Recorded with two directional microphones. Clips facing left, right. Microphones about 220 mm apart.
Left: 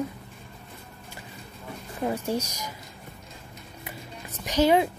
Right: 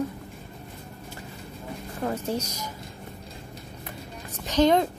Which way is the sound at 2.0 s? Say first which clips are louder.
Left 1 dB; 10° left (ahead or behind).